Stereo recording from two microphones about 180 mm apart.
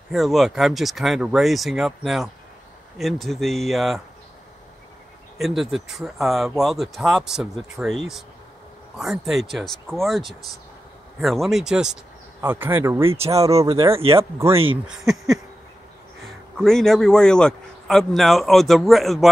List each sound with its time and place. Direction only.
0.1 s speech: centre (ahead or behind)
5.4 s speech: centre (ahead or behind)
13.5 s speech: 30° right (ahead or behind)
14.9 s speech: centre (ahead or behind)
16.5 s speech: 5° left (ahead or behind)